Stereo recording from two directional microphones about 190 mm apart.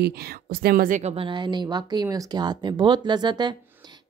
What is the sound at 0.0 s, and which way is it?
Speech, 55° right (ahead or behind).